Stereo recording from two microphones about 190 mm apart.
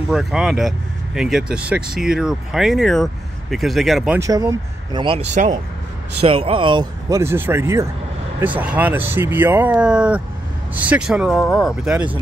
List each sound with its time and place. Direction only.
0.1 s speech: centre (ahead or behind)
4.2 s speech: 15° right (ahead or behind); by 5.6 s 40° right (ahead or behind)
6.2 s speech: 30° right (ahead or behind); by 12.2 s 5° right (ahead or behind)